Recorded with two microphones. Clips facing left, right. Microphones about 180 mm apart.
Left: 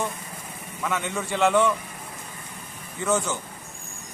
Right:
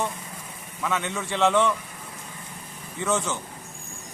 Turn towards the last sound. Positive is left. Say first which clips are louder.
# left 1 dB
turn(degrees=0)  # may be behind; listen again after turning